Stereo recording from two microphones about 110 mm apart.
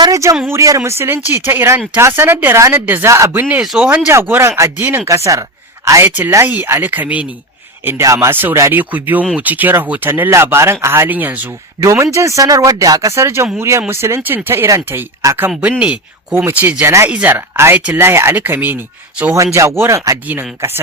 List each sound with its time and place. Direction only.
0.0 s speech: 30° right (ahead or behind)
3.6 s speech: 5° right (ahead or behind)
4.1 s speech: 20° right (ahead or behind)
5.0 s speech: 30° right (ahead or behind)
7.9 s speech: 25° right (ahead or behind)
11.8 s speech: 25° right (ahead or behind)
15.8 s speech: 15° right (ahead or behind)